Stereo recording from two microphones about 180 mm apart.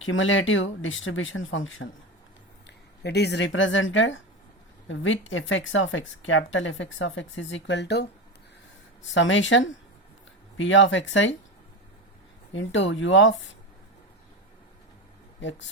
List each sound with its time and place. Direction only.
0.0 s speech: 90° left
2.6 s speech: 70° left (ahead or behind)
9.1 s speech: 90° left
12.5 s speech: 90° left